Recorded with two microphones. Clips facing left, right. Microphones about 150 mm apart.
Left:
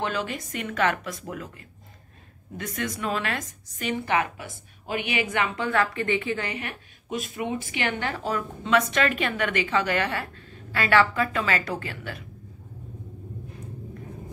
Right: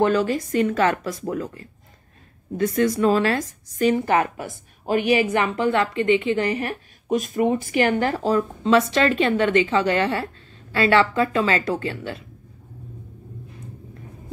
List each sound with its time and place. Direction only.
0.0 s a woman's voice: 40° right (ahead or behind); by 6.4 s 20° right (ahead or behind)
6.4 s a woman's voice: 35° right (ahead or behind)